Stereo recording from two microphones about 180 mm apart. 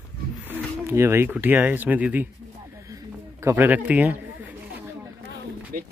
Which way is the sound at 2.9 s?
15° right (ahead or behind).